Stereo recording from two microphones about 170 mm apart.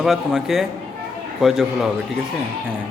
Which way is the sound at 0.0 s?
Centre (ahead or behind).